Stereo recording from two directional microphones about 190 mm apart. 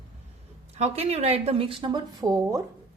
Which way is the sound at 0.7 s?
35° right (ahead or behind).